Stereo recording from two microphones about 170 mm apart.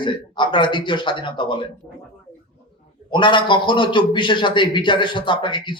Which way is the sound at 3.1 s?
30° left (ahead or behind).